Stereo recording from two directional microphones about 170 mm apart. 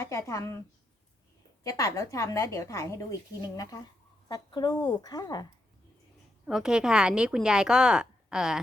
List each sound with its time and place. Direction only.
0.0 s a woman's voice: 15° left (ahead or behind)
1.6 s a woman's voice: 20° left (ahead or behind)
4.3 s speech: 25° left (ahead or behind)
6.4 s a woman's voice: 5° right (ahead or behind)